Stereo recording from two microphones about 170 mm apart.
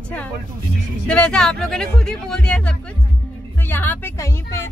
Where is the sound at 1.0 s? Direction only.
5° left (ahead or behind).